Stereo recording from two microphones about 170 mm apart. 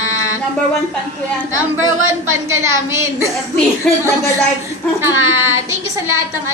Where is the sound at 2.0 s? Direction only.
15° right (ahead or behind).